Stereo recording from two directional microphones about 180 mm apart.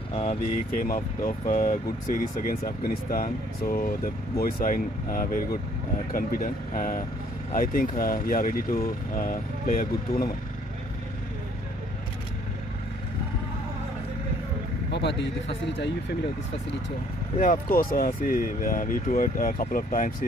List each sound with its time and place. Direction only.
0.1 s speech: 30° left (ahead or behind)
0.7 s speech: 50° left (ahead or behind)
14.9 s vehicle: 70° left (ahead or behind)
17.4 s speech: 50° left (ahead or behind)